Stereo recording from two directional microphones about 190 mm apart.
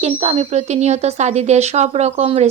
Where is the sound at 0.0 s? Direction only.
35° right (ahead or behind).